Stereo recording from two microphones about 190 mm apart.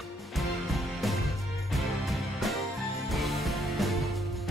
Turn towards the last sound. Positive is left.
turn(degrees=0)  # may be behind; listen again after turning